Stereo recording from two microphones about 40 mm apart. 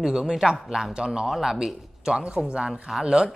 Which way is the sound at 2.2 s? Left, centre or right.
Right.